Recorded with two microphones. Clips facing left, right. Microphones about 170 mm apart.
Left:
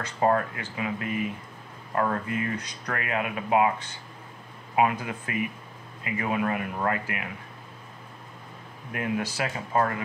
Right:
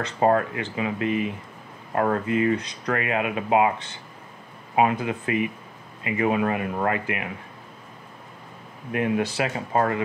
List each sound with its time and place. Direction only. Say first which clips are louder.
0.2 s speech: right 3 dB; 20° right (ahead or behind)
4.7 s speech: right 3 dB; 20° right (ahead or behind)
8.9 s speech: right 6 dB; 20° right (ahead or behind)